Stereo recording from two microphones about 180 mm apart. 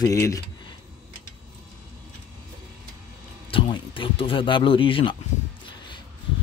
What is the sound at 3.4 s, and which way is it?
Speech, 30° left (ahead or behind).